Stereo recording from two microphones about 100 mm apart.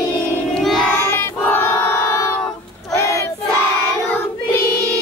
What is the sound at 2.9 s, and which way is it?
Battle cry, 30° left (ahead or behind).